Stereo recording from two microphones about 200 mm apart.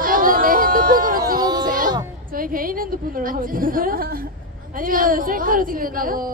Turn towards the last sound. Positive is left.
turn(degrees=-45)  # may be behind; listen again after turning